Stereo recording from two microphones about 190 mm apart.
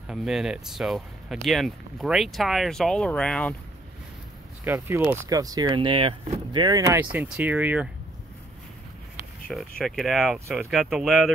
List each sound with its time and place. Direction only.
0.0 s speech: 5° right (ahead or behind)
4.6 s speech: 15° right (ahead or behind); by 6.6 s 30° right (ahead or behind)
6.6 s speech: 15° right (ahead or behind)
9.5 s speech: centre (ahead or behind)